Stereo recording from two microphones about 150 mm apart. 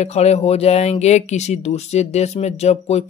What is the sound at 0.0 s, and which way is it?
Speech, 45° left (ahead or behind).